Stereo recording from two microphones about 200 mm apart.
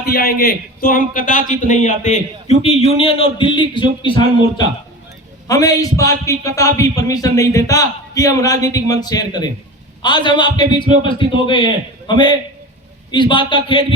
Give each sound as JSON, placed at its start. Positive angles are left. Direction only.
{"t": 0.0, "sound": "a man's voice", "side_deg": 50}